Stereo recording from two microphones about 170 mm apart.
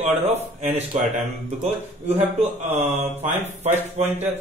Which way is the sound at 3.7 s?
10° right (ahead or behind).